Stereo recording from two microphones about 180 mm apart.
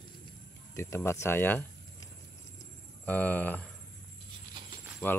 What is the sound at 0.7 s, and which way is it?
Speech, 15° left (ahead or behind).